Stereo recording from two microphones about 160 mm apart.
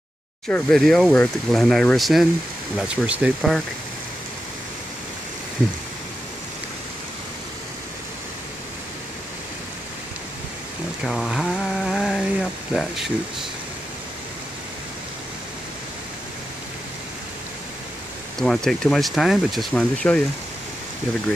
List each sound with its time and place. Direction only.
0.5 s speech: 5° left (ahead or behind); by 3.5 s 10° right (ahead or behind)
11.1 s speech: centre (ahead or behind)
18.4 s speech: 5° left (ahead or behind)